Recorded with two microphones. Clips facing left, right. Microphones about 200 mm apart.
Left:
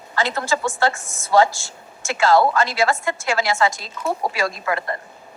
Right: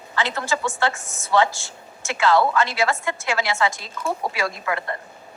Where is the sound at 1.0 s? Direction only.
90° left.